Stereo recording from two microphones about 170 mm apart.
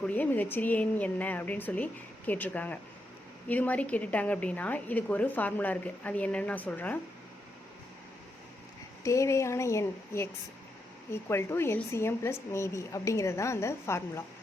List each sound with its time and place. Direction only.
0.0 s a woman's voice: 10° left (ahead or behind)
9.0 s a woman's voice: 15° left (ahead or behind)